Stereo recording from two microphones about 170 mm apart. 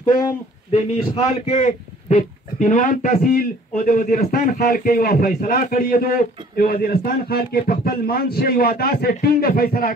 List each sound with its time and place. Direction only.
0.7 s a man's voice: 30° left (ahead or behind)
1.4 s speech: 45° left (ahead or behind)